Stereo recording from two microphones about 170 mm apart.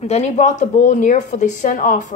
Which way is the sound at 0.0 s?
40° left (ahead or behind).